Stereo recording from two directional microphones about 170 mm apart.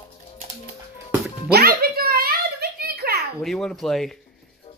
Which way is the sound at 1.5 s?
65° right (ahead or behind).